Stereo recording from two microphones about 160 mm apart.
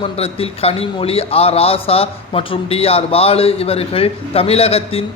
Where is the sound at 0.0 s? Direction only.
35° left (ahead or behind).